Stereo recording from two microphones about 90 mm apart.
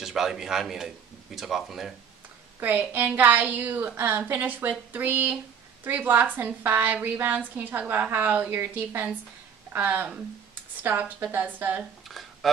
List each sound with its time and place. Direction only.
0.0 s a man's voice: 5° right (ahead or behind)
2.6 s a woman's voice: 20° right (ahead or behind)
12.1 s a sound: centre (ahead or behind)